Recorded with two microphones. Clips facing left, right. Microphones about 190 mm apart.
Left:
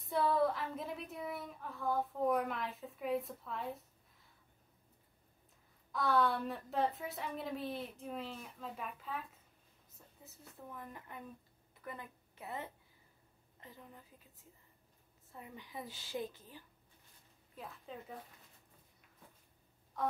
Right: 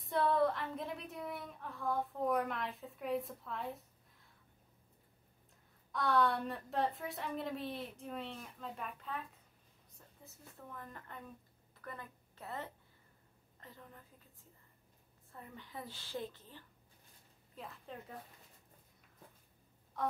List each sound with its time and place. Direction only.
0.0 s a woman's voice: centre (ahead or behind)
5.9 s a woman's voice: centre (ahead or behind)
10.2 s a sound: 5° left (ahead or behind)
10.7 s a woman's voice: 10° left (ahead or behind)
15.3 s a woman's voice: 15° left (ahead or behind)
17.6 s a woman's voice: centre (ahead or behind)
20.0 s a sound: centre (ahead or behind)